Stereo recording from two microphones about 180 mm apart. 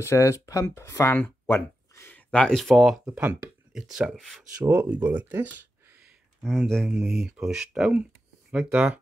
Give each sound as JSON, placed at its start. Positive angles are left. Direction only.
{"t": 0.0, "sound": "speech", "side_deg": 15}
{"t": 1.5, "sound": "a sound", "side_deg": 10}
{"t": 3.1, "sound": "speech", "side_deg": -10}
{"t": 4.6, "sound": "speech", "side_deg": -10}